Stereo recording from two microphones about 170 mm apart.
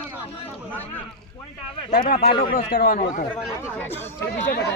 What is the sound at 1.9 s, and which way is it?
A man's voice, 55° left (ahead or behind).